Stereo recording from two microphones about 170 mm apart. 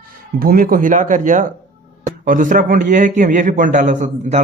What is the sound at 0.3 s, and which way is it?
A man's voice, 60° right (ahead or behind).